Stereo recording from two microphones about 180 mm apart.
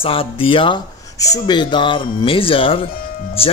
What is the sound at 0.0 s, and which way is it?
Speech, 30° left (ahead or behind).